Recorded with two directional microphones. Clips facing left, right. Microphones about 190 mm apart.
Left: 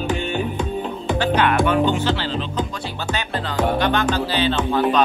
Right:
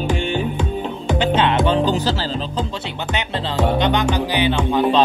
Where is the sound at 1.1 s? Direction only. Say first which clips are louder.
Right 1 dB; 20° right (ahead or behind); by 2.6 s 35° right (ahead or behind).